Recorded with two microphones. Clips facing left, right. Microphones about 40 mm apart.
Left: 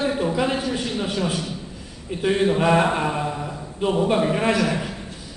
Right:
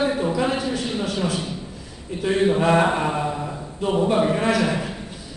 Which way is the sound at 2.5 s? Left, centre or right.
Centre.